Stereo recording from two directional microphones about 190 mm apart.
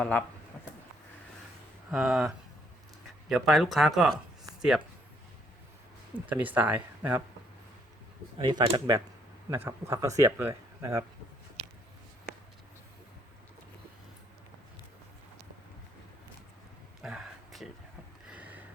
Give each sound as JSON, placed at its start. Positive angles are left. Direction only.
{"t": 0.0, "sound": "speech", "side_deg": 5}
{"t": 1.9, "sound": "speech", "side_deg": -5}
{"t": 6.1, "sound": "speech", "side_deg": -10}
{"t": 8.4, "sound": "speech", "side_deg": -25}
{"t": 17.0, "sound": "a sound", "side_deg": -5}